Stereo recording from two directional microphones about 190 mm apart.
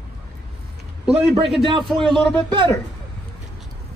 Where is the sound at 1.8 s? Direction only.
Centre (ahead or behind).